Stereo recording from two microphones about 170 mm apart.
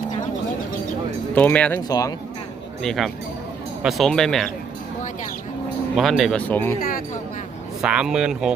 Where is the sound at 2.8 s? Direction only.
Centre (ahead or behind).